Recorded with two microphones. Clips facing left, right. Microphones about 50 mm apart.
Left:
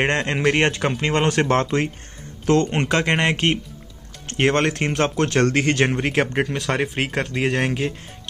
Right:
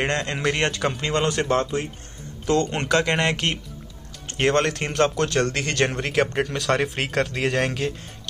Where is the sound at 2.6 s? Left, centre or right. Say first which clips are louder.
Left 1 dB; left.